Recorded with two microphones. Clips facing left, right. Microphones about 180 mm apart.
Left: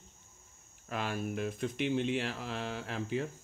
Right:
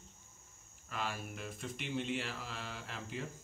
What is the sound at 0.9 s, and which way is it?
Speech, 50° left (ahead or behind).